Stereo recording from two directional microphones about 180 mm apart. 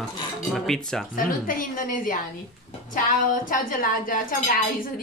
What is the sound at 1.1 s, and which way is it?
Speech, 50° left (ahead or behind).